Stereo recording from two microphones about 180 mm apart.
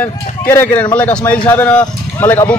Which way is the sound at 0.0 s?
10° left (ahead or behind).